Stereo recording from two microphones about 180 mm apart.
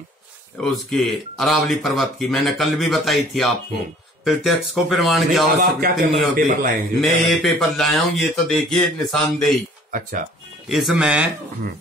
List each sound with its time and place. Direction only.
0.6 s speech: centre (ahead or behind)
5.6 s a man's voice: 55° right (ahead or behind)
7.0 s speech: centre (ahead or behind)
9.8 s speech: 50° right (ahead or behind)
10.7 s speech: centre (ahead or behind)